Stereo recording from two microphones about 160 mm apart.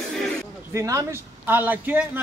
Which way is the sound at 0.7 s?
20° right (ahead or behind).